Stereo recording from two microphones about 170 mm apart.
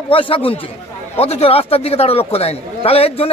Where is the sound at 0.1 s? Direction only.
30° left (ahead or behind).